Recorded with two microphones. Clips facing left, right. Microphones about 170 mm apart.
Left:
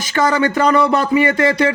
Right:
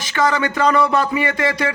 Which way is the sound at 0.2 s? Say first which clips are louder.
Left 3 dB; 40° left (ahead or behind).